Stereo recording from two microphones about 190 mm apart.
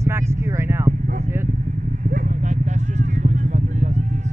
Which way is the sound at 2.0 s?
40° right (ahead or behind).